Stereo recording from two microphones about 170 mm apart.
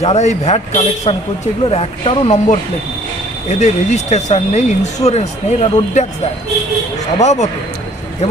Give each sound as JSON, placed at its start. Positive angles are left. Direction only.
{"t": 0.0, "sound": "speech", "side_deg": 40}
{"t": 7.2, "sound": "speech", "side_deg": 45}